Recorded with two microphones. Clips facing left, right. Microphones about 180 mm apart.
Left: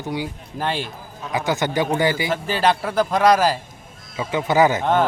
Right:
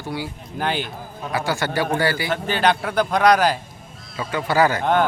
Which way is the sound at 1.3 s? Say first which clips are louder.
Left 2 dB; 20° left (ahead or behind).